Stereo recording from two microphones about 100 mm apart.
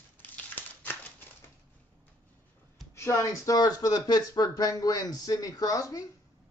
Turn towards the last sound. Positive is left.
turn(degrees=35)  # may be behind; listen again after turning